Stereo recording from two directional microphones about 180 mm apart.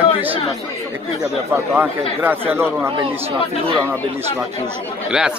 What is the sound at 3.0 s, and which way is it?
Speech, 30° right (ahead or behind).